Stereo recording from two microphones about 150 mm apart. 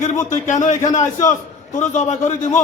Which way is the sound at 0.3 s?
55° left (ahead or behind).